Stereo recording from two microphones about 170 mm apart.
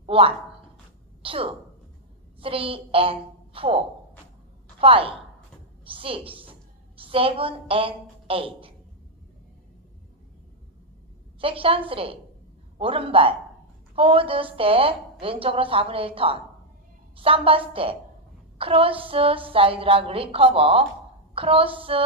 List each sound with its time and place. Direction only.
0.0 s a sound: 35° right (ahead or behind)
1.2 s a woman's voice: 30° right (ahead or behind)
11.4 s a woman's voice: 30° right (ahead or behind)